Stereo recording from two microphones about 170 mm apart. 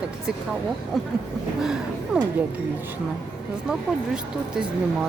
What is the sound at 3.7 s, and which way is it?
Speech, 5° right (ahead or behind).